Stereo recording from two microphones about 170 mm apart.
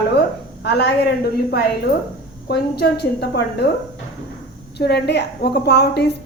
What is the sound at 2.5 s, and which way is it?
A woman's voice, 70° left (ahead or behind).